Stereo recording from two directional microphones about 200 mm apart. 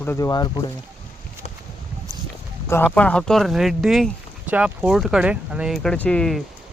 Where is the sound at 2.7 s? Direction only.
10° left (ahead or behind).